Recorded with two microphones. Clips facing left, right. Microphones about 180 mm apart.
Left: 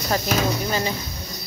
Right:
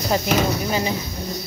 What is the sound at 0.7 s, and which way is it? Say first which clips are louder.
Speech: right 2 dB; 15° right (ahead or behind).